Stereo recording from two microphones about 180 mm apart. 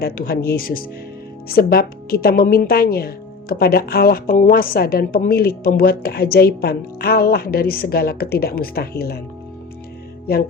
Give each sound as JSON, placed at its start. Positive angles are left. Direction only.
{"t": 0.0, "sound": "a woman's voice", "side_deg": 60}
{"t": 10.3, "sound": "a woman's voice", "side_deg": 55}